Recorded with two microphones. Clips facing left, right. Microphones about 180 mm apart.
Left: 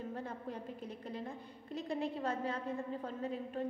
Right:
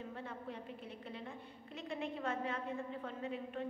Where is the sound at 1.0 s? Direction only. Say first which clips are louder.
Left 4 dB; 40° left (ahead or behind).